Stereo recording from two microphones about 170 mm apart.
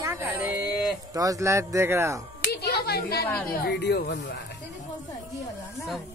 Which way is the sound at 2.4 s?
75° left (ahead or behind).